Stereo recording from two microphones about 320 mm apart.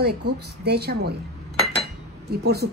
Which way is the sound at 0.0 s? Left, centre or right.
Right.